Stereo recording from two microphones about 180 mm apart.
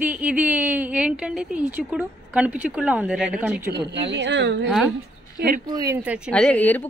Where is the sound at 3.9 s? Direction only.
75° right (ahead or behind).